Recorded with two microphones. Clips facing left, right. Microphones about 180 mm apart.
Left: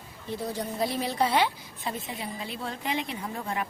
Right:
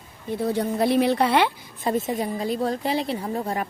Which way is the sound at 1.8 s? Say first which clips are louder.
Right 10 dB; 45° right (ahead or behind).